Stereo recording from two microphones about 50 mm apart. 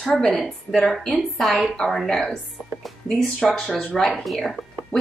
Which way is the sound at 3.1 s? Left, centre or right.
Centre.